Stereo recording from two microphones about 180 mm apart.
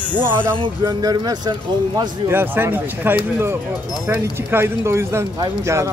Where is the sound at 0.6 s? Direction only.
25° right (ahead or behind).